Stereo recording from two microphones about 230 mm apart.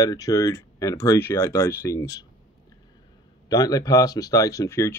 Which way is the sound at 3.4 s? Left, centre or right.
Centre.